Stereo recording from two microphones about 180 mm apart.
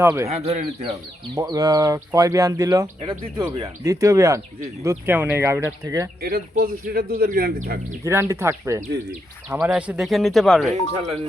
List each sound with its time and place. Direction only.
0.0 s speech: 15° right (ahead or behind)
0.3 s speech: 35° right (ahead or behind)
1.4 s speech: 20° right (ahead or behind)
6.2 s a man's voice: 55° right (ahead or behind)
8.0 s speech: 15° right (ahead or behind); by 10.7 s centre (ahead or behind)